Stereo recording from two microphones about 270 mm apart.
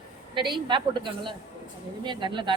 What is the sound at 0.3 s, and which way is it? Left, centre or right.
A woman's voice, centre.